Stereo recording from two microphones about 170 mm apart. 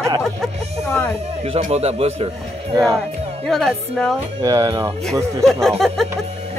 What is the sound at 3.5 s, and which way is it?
Speech, 5° left (ahead or behind).